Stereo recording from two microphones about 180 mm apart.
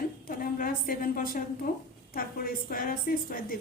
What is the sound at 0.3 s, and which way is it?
A woman's voice, 55° left (ahead or behind).